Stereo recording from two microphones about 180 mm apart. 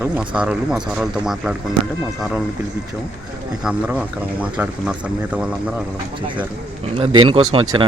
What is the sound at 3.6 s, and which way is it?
Speech, 10° right (ahead or behind).